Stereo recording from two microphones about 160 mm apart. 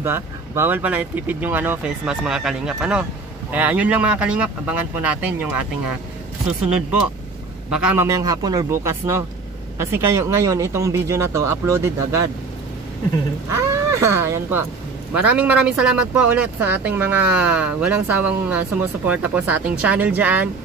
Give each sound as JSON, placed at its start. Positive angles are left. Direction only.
{"t": 0.0, "sound": "speech", "side_deg": -15}
{"t": 7.7, "sound": "speech", "side_deg": -10}
{"t": 13.5, "sound": "speech", "side_deg": -15}